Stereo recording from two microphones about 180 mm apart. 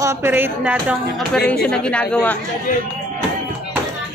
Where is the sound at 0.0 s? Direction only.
15° right (ahead or behind).